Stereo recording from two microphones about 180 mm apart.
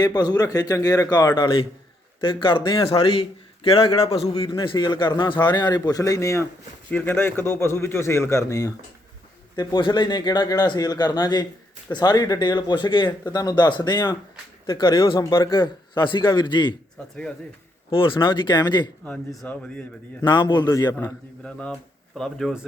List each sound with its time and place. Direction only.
0.0 s a man's voice: 25° left (ahead or behind)
17.9 s a man's voice: 30° left (ahead or behind)
19.0 s a man's voice: 5° left (ahead or behind)
20.2 s a man's voice: 25° left (ahead or behind)
20.9 s speech: 5° left (ahead or behind)